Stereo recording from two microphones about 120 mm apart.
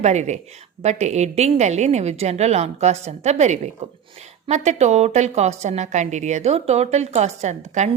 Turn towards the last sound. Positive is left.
turn(degrees=-75)  # may be behind; listen again after turning